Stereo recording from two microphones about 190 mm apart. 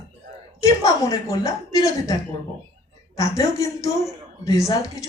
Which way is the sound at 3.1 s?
15° left (ahead or behind).